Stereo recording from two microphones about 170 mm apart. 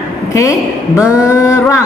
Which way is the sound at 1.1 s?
20° left (ahead or behind).